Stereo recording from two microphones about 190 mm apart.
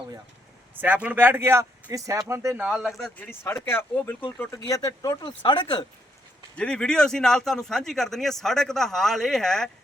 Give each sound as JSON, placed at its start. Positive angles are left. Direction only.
{"t": 0.8, "sound": "speech", "side_deg": -10}
{"t": 2.6, "sound": "a man's voice", "side_deg": 0}
{"t": 3.2, "sound": "speech", "side_deg": 10}
{"t": 6.6, "sound": "a man's voice", "side_deg": 5}